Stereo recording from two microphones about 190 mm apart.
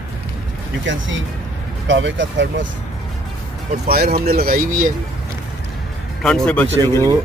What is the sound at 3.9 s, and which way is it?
Speech, 55° right (ahead or behind).